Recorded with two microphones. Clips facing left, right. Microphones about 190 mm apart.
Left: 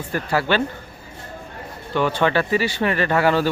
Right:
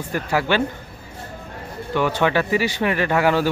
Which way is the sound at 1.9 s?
10° right (ahead or behind).